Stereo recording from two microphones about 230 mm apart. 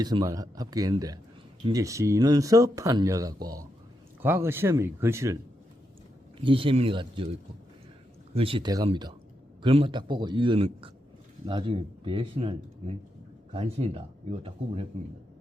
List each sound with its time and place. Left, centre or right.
0.0 s speech: centre
6.4 s speech: right
8.4 s speech: right